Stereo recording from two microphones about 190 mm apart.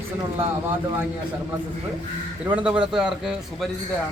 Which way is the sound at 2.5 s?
5° right (ahead or behind).